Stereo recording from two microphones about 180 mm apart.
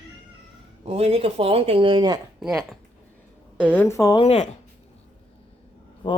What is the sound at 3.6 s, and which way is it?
Speech, 10° left (ahead or behind).